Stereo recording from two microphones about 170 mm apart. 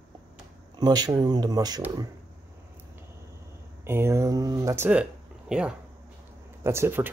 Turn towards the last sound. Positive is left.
turn(degrees=-15)  # may be behind; listen again after turning